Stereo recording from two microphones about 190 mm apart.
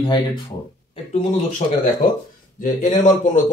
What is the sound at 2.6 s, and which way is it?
Speech, 40° left (ahead or behind).